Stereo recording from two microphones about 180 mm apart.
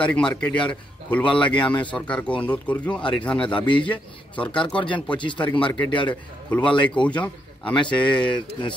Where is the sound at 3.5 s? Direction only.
25° left (ahead or behind).